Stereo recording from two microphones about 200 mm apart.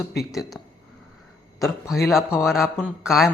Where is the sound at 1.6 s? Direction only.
15° left (ahead or behind).